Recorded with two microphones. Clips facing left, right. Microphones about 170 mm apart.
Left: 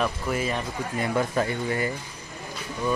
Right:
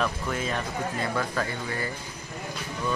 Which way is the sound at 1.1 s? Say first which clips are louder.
Left 4 dB; 20° left (ahead or behind).